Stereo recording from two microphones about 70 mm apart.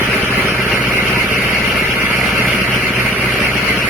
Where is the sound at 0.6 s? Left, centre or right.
Right.